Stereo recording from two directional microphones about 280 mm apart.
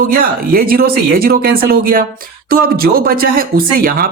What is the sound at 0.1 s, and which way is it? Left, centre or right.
Speech, right.